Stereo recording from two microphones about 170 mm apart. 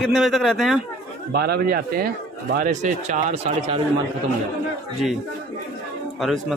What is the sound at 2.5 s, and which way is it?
Speech, 50° right (ahead or behind).